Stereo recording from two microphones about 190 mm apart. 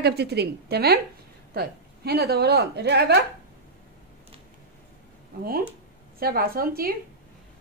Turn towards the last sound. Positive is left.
turn(degrees=-50)  # may be behind; listen again after turning